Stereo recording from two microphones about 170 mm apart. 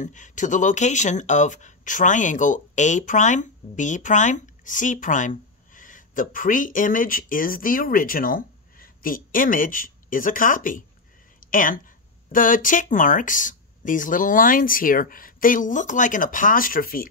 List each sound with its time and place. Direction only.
0.0 s speech: 45° left (ahead or behind)